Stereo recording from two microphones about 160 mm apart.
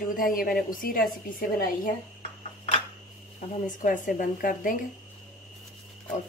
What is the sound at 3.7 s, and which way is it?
Speech, 55° left (ahead or behind).